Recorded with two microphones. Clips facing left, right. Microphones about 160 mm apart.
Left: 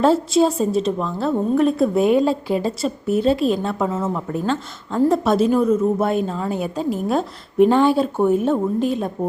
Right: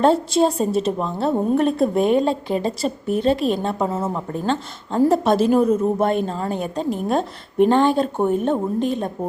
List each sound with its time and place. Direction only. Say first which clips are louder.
0.0 s a woman's voice: left 1 dB; centre (ahead or behind)
3.8 s a woman's voice: left 1 dB; 30° right (ahead or behind)
4.1 s a woman's voice: left 1 dB; 5° left (ahead or behind)